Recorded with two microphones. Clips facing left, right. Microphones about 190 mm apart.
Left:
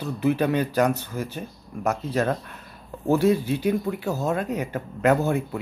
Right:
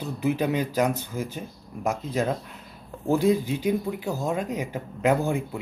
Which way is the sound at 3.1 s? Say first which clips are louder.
Left 2 dB; 15° right (ahead or behind).